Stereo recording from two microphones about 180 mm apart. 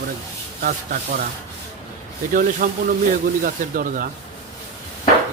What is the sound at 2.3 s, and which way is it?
Speech, 50° right (ahead or behind).